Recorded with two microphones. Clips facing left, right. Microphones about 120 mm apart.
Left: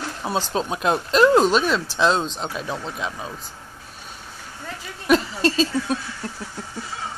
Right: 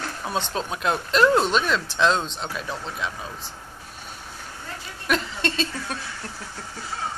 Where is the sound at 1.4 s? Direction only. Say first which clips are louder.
Left 4 dB; 5° left (ahead or behind).